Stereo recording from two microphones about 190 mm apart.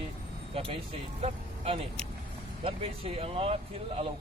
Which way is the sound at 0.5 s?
30° right (ahead or behind).